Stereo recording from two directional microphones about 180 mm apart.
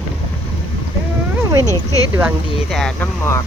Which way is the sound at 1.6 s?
15° left (ahead or behind).